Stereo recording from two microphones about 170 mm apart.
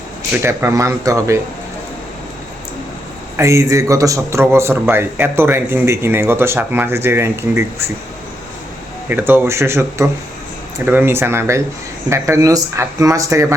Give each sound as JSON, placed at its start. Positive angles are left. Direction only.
{"t": 0.3, "sound": "speech", "side_deg": -15}
{"t": 3.3, "sound": "speech", "side_deg": -15}
{"t": 9.0, "sound": "speech", "side_deg": -10}